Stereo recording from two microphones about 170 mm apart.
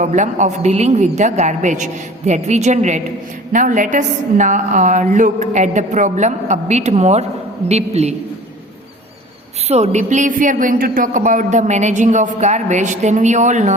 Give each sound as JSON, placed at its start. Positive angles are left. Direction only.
{"t": 0.0, "sound": "a man's voice", "side_deg": -45}
{"t": 9.6, "sound": "speech", "side_deg": -40}